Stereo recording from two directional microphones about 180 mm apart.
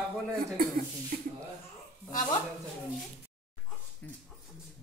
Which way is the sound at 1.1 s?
50° right (ahead or behind).